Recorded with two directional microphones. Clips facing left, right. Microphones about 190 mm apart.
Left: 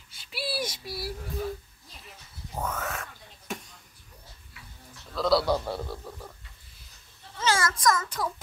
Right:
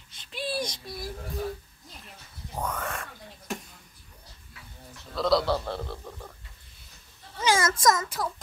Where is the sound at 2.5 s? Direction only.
5° left (ahead or behind).